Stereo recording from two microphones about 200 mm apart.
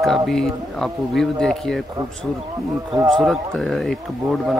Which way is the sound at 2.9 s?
Centre (ahead or behind).